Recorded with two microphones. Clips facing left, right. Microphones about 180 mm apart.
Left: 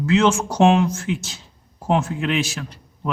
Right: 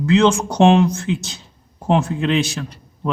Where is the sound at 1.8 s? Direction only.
5° left (ahead or behind).